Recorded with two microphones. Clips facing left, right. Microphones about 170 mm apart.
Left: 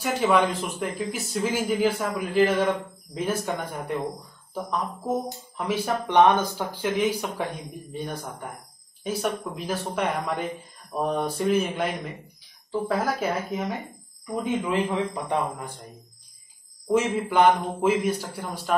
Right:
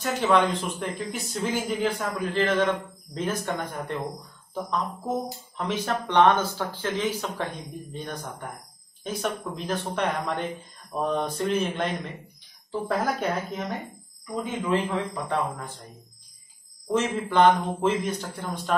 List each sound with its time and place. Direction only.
0.0 s speech: 10° left (ahead or behind)
14.3 s speech: 10° left (ahead or behind)
16.9 s speech: 10° left (ahead or behind)